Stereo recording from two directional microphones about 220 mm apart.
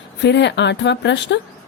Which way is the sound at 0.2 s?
55° left (ahead or behind).